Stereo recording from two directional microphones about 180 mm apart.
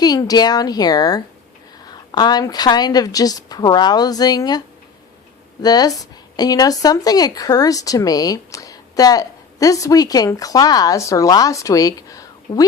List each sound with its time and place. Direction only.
0.0 s speech: 20° left (ahead or behind)
5.6 s speech: 20° left (ahead or behind)